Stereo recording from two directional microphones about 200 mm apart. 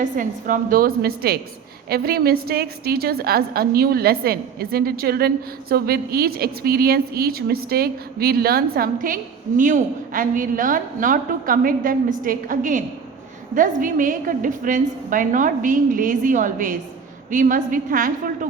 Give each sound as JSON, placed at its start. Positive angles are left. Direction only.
{"t": 0.0, "sound": "a woman's voice", "side_deg": -40}